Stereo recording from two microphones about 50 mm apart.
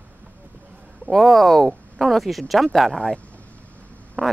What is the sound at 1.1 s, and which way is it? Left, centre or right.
Speech, centre.